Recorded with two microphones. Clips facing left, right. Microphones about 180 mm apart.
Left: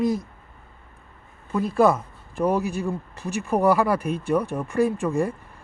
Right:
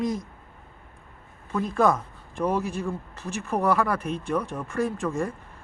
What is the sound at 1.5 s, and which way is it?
A man's voice, 5° left (ahead or behind).